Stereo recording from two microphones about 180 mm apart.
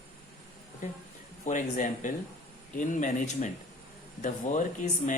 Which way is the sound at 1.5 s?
40° left (ahead or behind).